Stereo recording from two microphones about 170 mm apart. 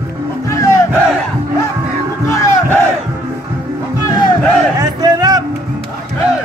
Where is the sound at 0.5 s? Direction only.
20° left (ahead or behind).